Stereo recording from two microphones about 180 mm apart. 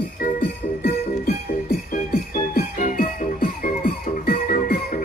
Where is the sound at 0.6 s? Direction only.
55° left (ahead or behind).